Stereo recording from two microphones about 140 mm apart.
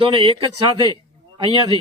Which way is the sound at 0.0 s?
40° right (ahead or behind).